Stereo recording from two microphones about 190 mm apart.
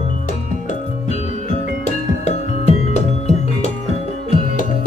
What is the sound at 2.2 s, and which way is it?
Music, 35° left (ahead or behind).